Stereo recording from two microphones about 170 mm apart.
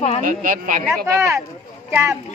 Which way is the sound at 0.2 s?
55° right (ahead or behind).